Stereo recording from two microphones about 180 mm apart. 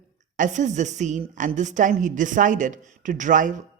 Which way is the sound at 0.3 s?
45° right (ahead or behind).